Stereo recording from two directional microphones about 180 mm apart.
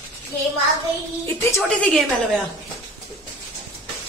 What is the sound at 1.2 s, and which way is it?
Speech, 15° left (ahead or behind).